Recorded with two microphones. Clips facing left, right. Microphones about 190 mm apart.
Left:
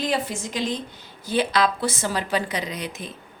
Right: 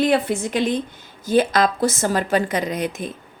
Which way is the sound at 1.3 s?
45° right (ahead or behind).